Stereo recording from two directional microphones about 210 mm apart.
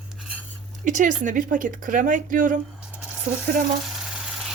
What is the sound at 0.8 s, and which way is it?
Speech, 35° right (ahead or behind).